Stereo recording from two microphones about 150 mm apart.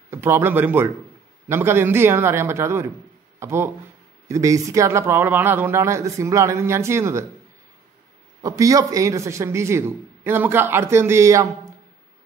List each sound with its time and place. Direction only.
0.1 s a man's voice: 15° right (ahead or behind)
8.4 s a man's voice: 25° right (ahead or behind)